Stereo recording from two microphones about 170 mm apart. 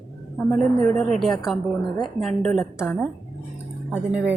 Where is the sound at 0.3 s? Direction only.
5° left (ahead or behind).